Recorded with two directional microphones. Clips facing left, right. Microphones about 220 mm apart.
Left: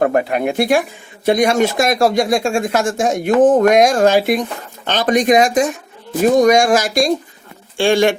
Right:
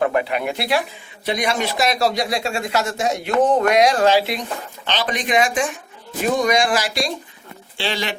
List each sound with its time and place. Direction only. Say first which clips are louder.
0.0 s speech: left 5 dB; 45° left (ahead or behind)